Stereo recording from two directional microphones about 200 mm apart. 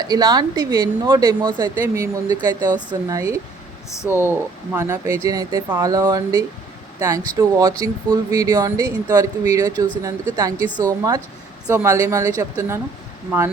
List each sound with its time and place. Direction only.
0.0 s speech: 20° right (ahead or behind)
3.8 s speech: 15° left (ahead or behind)
4.1 s speech: 10° right (ahead or behind)
10.7 s speech: 10° left (ahead or behind)
11.7 s speech: 15° right (ahead or behind)